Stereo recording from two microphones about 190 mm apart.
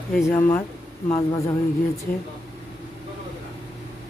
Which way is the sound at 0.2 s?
15° left (ahead or behind).